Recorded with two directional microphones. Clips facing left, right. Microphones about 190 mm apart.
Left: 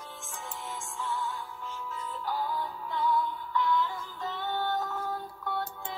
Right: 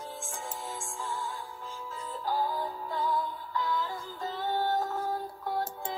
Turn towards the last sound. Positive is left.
turn(degrees=-40)  # may be behind; listen again after turning